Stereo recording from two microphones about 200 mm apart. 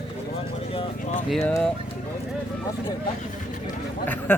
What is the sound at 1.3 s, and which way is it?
Speech, 5° left (ahead or behind).